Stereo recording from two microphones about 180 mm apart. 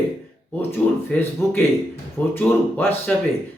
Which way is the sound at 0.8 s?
5° left (ahead or behind).